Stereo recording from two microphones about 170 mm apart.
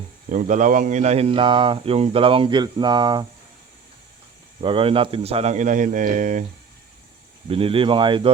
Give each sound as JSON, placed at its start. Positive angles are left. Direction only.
{"t": 0.3, "sound": "speech", "side_deg": -45}
{"t": 4.6, "sound": "speech", "side_deg": -30}
{"t": 7.4, "sound": "speech", "side_deg": -35}